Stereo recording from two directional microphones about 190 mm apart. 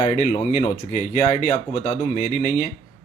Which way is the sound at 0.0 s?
35° left (ahead or behind).